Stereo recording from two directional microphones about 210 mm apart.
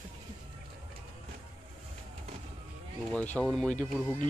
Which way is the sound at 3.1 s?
5° left (ahead or behind).